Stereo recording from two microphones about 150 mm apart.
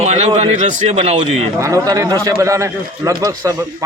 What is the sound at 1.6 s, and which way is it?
A man's voice, 20° right (ahead or behind).